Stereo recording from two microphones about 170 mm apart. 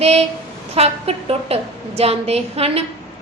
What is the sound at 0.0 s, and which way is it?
A woman's voice, 35° right (ahead or behind).